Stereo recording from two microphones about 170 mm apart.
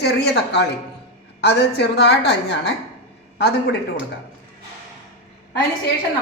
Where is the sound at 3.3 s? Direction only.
75° left (ahead or behind).